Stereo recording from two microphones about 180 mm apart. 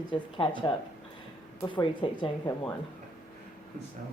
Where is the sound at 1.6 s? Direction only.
25° left (ahead or behind).